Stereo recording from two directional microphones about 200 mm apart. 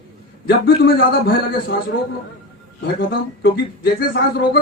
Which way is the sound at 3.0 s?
50° left (ahead or behind).